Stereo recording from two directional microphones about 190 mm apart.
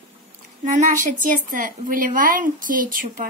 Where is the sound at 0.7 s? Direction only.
40° right (ahead or behind).